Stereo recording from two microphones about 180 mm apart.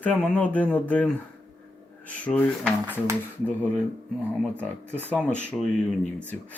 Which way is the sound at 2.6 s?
10° right (ahead or behind).